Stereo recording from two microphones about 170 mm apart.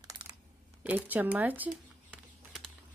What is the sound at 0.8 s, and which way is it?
Speech, 10° right (ahead or behind).